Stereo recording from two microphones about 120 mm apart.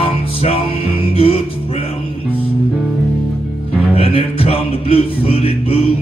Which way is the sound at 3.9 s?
55° left (ahead or behind).